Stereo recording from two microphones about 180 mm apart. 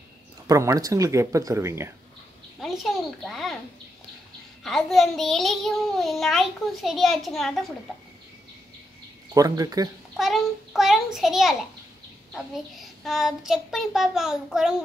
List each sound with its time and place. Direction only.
0.5 s speech: 20° right (ahead or behind)
2.6 s a child's voice: centre (ahead or behind)
4.6 s a child's voice: centre (ahead or behind)
9.3 s speech: 20° right (ahead or behind)
10.1 s a child's voice: centre (ahead or behind)
12.7 s a child's voice: centre (ahead or behind)